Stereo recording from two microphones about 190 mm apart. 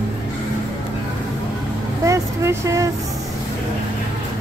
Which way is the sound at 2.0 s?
15° right (ahead or behind).